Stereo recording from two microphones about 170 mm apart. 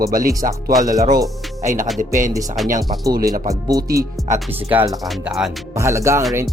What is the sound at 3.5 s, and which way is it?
Speech, 20° right (ahead or behind).